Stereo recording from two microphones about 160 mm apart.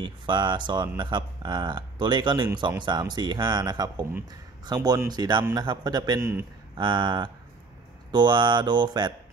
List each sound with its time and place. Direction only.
0.0 s speech: 30° right (ahead or behind)
6.8 s speech: 30° right (ahead or behind)